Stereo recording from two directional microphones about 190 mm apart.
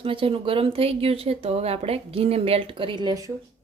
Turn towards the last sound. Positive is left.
turn(degrees=-20)  # may be behind; listen again after turning